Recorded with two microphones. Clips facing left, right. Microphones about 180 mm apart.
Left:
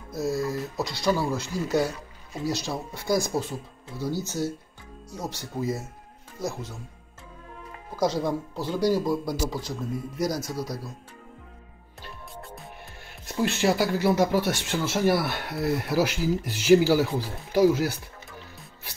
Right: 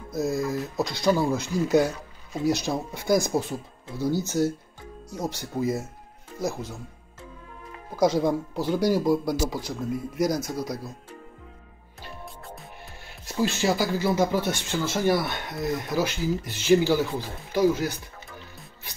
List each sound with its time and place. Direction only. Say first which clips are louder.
0.1 s speech: right 1 dB; 15° right (ahead or behind)
8.0 s speech: right 3 dB; 15° right (ahead or behind)
13.2 s speech: even; centre (ahead or behind)